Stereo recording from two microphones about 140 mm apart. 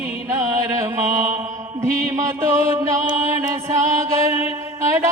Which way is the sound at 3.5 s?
20° right (ahead or behind).